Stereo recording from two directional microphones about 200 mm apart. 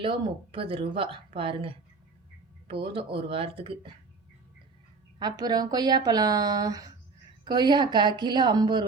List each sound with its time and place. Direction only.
0.0 s speech: 25° right (ahead or behind)
5.2 s speech: 20° right (ahead or behind)